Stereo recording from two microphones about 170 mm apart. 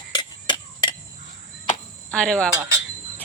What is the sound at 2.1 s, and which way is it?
Speech, 5° left (ahead or behind).